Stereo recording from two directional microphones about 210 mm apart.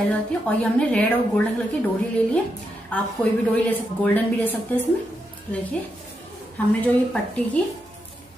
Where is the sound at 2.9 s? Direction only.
5° left (ahead or behind).